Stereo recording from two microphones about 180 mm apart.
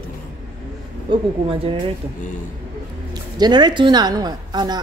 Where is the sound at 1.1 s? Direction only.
30° right (ahead or behind).